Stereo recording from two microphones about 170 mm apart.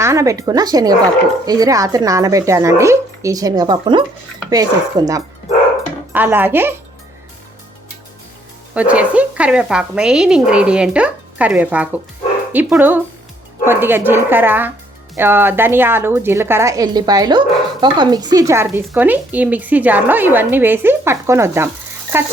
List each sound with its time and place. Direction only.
0.0 s a woman's voice: 15° right (ahead or behind)
8.7 s a woman's voice: 10° right (ahead or behind)